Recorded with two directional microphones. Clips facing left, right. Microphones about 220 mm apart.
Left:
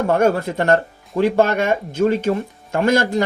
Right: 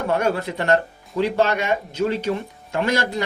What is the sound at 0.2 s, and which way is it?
Speech, 45° left (ahead or behind).